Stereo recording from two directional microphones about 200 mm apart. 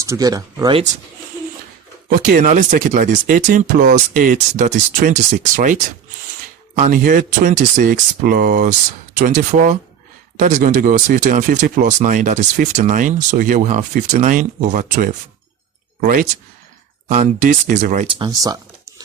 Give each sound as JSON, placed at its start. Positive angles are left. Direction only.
{"t": 0.0, "sound": "speech", "side_deg": -15}
{"t": 2.0, "sound": "speech", "side_deg": -45}
{"t": 6.7, "sound": "speech", "side_deg": -40}